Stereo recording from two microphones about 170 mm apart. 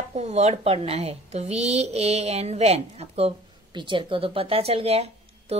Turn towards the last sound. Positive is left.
turn(degrees=-35)  # may be behind; listen again after turning